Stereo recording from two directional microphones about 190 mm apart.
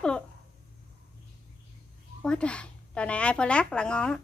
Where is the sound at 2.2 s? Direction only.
5° left (ahead or behind).